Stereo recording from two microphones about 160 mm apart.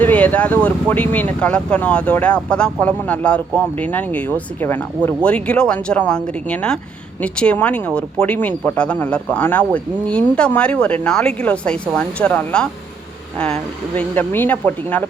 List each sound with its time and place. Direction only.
0.0 s speech: 10° left (ahead or behind)